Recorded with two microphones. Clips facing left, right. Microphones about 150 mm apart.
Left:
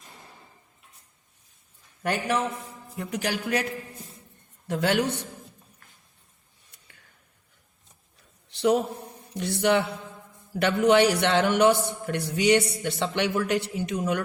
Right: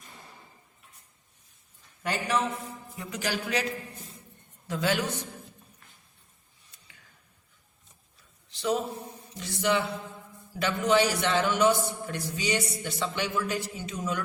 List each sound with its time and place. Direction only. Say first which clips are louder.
2.0 s a man's voice: left 2 dB; 55° left (ahead or behind)
4.7 s a man's voice: left 4 dB; 60° left (ahead or behind)
8.4 s a sound: left 6 dB; 65° left (ahead or behind)
9.3 s a man's voice: left 5 dB; 60° left (ahead or behind)